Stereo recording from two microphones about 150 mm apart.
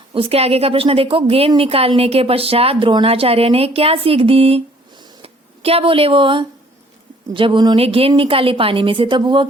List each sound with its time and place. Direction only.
0.1 s a woman's voice: 40° right (ahead or behind)
7.8 s a woman's voice: 40° right (ahead or behind)